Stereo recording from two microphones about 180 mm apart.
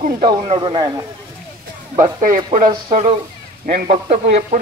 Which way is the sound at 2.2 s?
45° right (ahead or behind).